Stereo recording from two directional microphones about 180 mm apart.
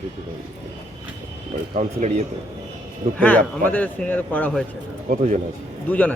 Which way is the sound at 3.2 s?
10° left (ahead or behind).